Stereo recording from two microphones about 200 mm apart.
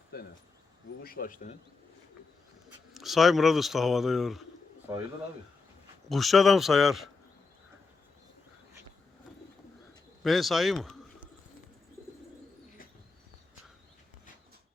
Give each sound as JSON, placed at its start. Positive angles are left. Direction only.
{"t": 0.1, "sound": "speech", "side_deg": 50}
{"t": 2.9, "sound": "speech", "side_deg": 0}
{"t": 6.1, "sound": "speech", "side_deg": 0}
{"t": 10.2, "sound": "speech", "side_deg": 0}